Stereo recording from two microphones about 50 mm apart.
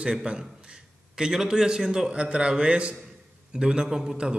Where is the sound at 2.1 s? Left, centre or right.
Right.